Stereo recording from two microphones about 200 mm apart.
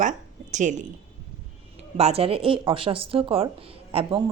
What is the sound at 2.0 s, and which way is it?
Speech, 30° right (ahead or behind).